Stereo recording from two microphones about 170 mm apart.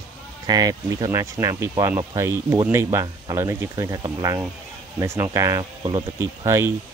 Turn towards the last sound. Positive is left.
turn(degrees=-15)  # may be behind; listen again after turning